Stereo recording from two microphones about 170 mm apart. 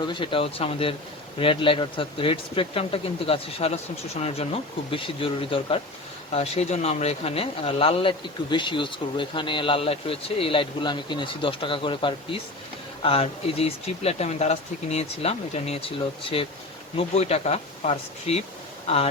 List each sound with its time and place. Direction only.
0.0 s speech: 30° left (ahead or behind)
17.0 s speech: 35° left (ahead or behind)